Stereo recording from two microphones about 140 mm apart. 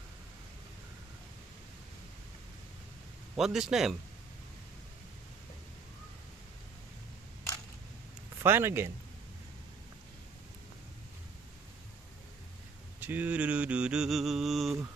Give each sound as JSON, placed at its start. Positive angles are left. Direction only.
{"t": 3.3, "sound": "a man's voice", "side_deg": -5}
{"t": 8.4, "sound": "mantra", "side_deg": -15}
{"t": 13.0, "sound": "mantra", "side_deg": -15}